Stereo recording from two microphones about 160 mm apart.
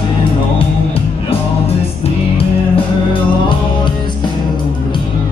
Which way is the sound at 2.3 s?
35° left (ahead or behind).